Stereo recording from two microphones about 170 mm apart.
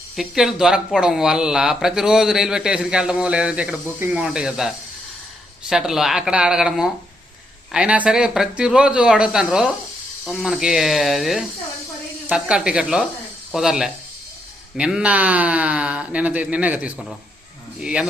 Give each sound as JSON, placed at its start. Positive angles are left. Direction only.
{"t": 0.2, "sound": "speech", "side_deg": 0}